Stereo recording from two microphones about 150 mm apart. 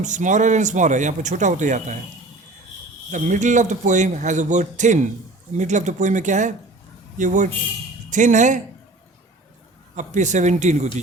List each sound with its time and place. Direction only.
0.0 s speech: 55° right (ahead or behind)
3.1 s speech: 55° right (ahead or behind)
9.9 s speech: 55° right (ahead or behind)